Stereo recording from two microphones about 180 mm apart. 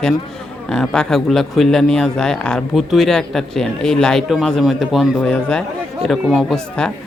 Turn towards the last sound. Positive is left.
turn(degrees=0)  # may be behind; listen again after turning